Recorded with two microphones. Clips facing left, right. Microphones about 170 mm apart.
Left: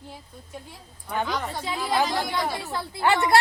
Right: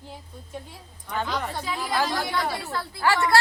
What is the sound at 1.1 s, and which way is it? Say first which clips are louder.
Speech: left 1 dB; 10° left (ahead or behind).